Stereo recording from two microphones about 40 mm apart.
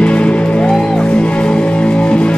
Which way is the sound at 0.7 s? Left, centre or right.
Centre.